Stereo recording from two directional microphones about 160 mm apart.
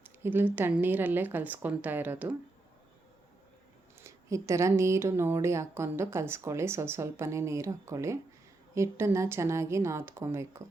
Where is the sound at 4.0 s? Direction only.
20° right (ahead or behind).